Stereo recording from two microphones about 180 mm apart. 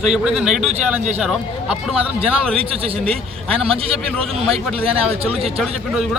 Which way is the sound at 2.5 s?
30° right (ahead or behind).